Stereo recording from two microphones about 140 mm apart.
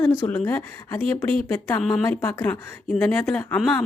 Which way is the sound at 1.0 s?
40° right (ahead or behind).